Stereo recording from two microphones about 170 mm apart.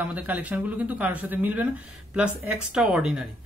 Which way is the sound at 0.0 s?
10° right (ahead or behind).